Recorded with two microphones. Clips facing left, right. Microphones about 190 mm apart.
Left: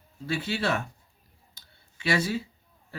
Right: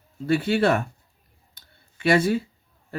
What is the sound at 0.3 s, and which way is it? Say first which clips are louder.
Speech: right 8 dB; 55° right (ahead or behind).